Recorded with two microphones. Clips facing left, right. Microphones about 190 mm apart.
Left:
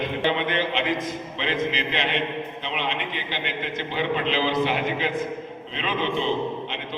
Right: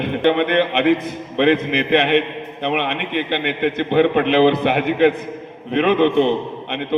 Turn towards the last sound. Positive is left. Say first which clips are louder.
# right 3 dB
turn(degrees=-60)  # may be behind; listen again after turning